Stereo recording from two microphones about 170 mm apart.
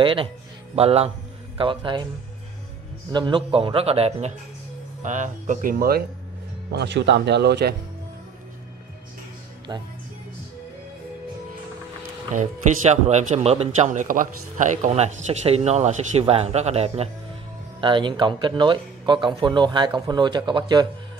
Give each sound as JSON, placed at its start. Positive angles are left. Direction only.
{"t": 0.0, "sound": "speech", "side_deg": -30}
{"t": 3.1, "sound": "speech", "side_deg": -25}
{"t": 5.0, "sound": "speech", "side_deg": -45}
{"t": 6.7, "sound": "speech", "side_deg": -85}
{"t": 9.7, "sound": "speech", "side_deg": -25}
{"t": 12.4, "sound": "speech", "side_deg": -45}